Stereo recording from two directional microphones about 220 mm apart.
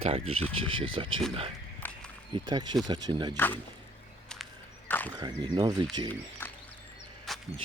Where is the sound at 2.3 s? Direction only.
20° right (ahead or behind).